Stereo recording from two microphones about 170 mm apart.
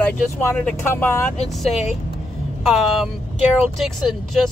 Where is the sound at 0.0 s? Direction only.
10° left (ahead or behind).